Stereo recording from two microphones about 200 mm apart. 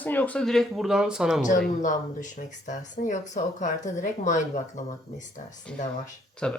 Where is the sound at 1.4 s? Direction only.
40° left (ahead or behind).